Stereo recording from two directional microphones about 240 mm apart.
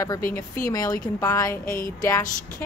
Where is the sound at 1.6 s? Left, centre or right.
Left.